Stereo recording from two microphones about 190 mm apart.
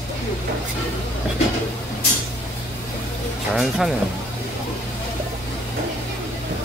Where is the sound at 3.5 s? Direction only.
Centre (ahead or behind).